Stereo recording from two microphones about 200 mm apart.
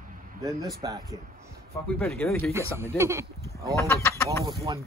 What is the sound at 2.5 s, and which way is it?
Speech, 15° right (ahead or behind).